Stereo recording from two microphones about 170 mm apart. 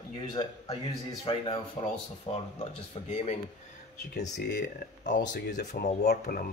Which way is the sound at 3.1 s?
35° left (ahead or behind).